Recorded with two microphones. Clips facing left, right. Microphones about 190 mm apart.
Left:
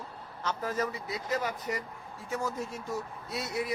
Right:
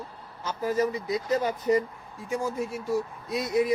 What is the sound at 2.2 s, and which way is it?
Speech, 10° right (ahead or behind).